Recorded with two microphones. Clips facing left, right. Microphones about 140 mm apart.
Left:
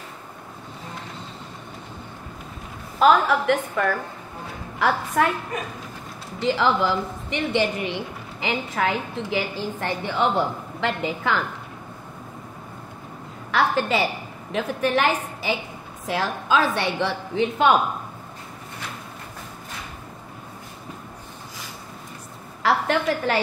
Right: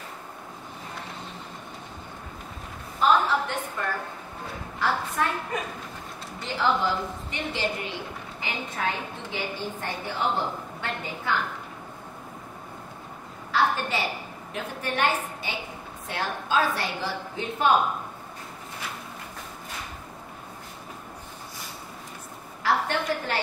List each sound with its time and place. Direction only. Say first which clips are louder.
3.0 s a woman's voice: left 5 dB; 90° left
6.4 s a woman's voice: left 5 dB; 90° left
13.5 s a woman's voice: left 4 dB; 90° left
22.6 s a sound: left 4 dB; 90° left